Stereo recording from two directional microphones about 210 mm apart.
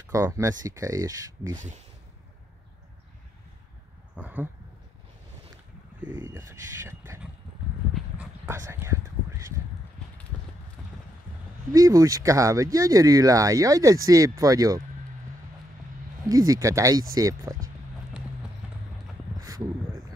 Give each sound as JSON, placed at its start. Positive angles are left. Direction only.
{"t": 0.0, "sound": "speech", "side_deg": -15}
{"t": 4.2, "sound": "speech", "side_deg": -10}
{"t": 6.2, "sound": "speech", "side_deg": -15}
{"t": 7.9, "sound": "horse", "side_deg": -10}
{"t": 11.7, "sound": "speech", "side_deg": -15}
{"t": 16.3, "sound": "speech", "side_deg": -15}